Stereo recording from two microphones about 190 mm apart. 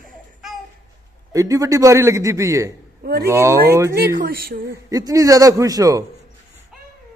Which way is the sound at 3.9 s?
55° right (ahead or behind).